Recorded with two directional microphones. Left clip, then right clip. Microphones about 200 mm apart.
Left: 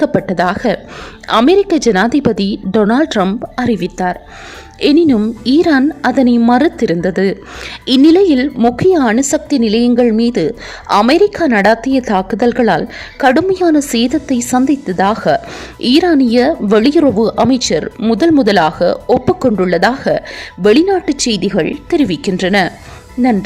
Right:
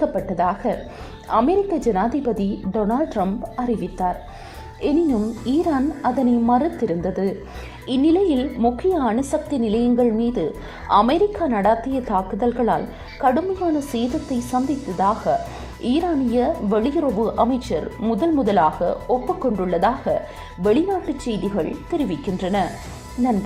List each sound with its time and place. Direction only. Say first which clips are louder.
0.3 s a woman's voice: left 7 dB; 35° left (ahead or behind)